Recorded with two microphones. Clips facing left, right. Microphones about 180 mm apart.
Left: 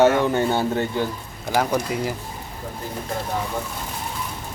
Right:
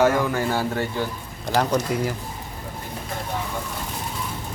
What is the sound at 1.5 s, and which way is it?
Speech, 10° left (ahead or behind).